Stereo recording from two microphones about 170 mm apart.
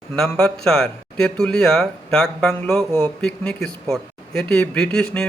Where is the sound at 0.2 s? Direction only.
Centre (ahead or behind).